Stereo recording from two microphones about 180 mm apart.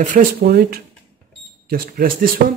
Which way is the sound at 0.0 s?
50° right (ahead or behind).